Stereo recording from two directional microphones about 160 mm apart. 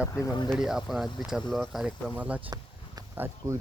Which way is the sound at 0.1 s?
20° left (ahead or behind).